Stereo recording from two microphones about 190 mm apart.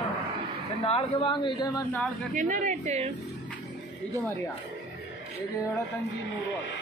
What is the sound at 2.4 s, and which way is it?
Speech, 40° right (ahead or behind).